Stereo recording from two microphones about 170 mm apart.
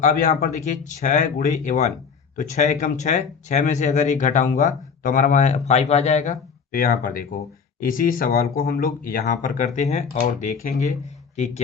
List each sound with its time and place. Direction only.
0.0 s speech: 55° left (ahead or behind)
0.5 s speech: 45° left (ahead or behind)